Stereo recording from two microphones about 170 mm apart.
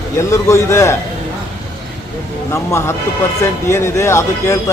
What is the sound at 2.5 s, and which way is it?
Speech, 15° left (ahead or behind).